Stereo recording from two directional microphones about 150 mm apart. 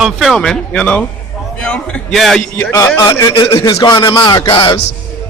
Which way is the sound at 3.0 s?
25° left (ahead or behind).